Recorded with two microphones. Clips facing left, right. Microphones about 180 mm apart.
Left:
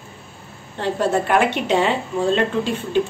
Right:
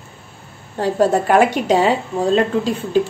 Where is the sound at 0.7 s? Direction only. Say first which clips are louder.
Right 4 dB; 40° right (ahead or behind).